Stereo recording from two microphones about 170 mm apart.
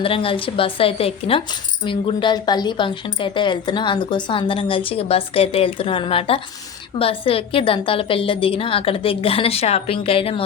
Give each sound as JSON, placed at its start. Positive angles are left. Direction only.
{"t": 0.0, "sound": "speech", "side_deg": 30}